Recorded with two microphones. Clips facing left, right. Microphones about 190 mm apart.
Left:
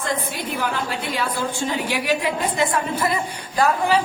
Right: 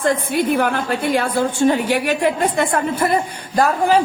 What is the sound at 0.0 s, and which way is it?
A woman's voice, 55° right (ahead or behind).